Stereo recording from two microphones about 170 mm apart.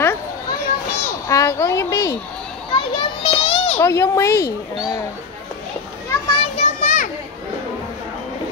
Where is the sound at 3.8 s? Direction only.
15° left (ahead or behind).